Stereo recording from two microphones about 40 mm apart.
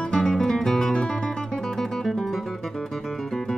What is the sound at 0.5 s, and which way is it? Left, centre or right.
Guitar, centre.